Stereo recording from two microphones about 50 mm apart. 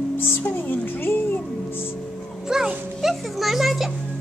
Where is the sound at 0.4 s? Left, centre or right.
Left.